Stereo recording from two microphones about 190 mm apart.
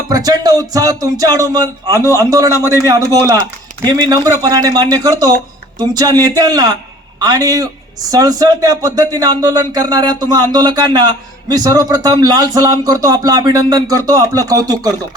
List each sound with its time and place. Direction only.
0.1 s a man's voice: 20° right (ahead or behind)